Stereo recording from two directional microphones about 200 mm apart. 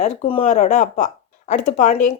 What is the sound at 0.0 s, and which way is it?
Speech, 30° left (ahead or behind).